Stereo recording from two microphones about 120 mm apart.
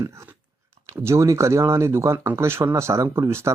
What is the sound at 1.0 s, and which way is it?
Speech, 25° right (ahead or behind).